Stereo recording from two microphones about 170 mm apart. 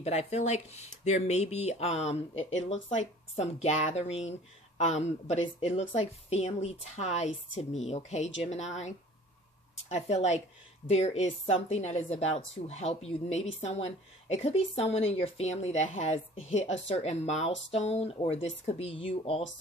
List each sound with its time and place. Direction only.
0.0 s a woman's voice: 40° left (ahead or behind)